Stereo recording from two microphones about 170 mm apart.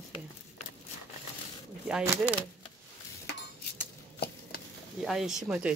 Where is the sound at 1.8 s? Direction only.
5° right (ahead or behind).